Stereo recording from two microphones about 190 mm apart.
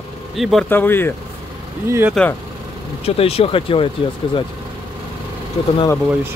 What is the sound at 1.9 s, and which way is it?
Speech, 10° right (ahead or behind).